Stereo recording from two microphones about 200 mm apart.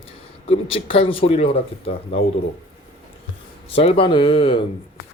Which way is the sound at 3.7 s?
30° left (ahead or behind).